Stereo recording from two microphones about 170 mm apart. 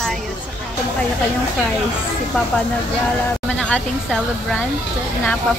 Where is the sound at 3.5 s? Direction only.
5° left (ahead or behind).